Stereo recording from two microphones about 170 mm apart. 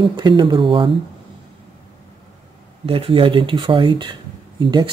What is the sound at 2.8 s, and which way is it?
Speech, 35° right (ahead or behind).